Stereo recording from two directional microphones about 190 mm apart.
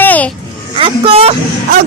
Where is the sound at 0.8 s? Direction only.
30° right (ahead or behind).